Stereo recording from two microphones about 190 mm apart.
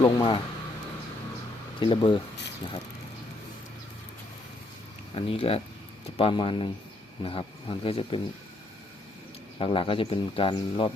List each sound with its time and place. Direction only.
0.0 s speech: 25° left (ahead or behind)
1.8 s speech: 25° left (ahead or behind)
5.1 s speech: 30° left (ahead or behind)
9.6 s speech: 30° left (ahead or behind)